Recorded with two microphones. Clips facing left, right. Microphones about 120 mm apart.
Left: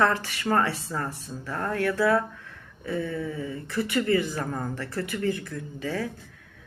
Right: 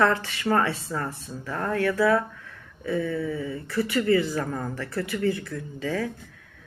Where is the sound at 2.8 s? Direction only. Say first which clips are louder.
Right 3 dB; 20° left (ahead or behind).